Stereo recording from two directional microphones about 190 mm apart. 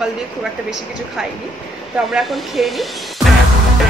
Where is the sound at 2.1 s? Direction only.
Centre (ahead or behind).